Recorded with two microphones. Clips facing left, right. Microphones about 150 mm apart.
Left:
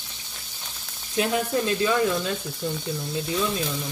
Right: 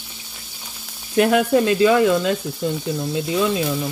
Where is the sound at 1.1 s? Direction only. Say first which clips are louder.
Right 8 dB; 70° right (ahead or behind); by 3.4 s 90° right.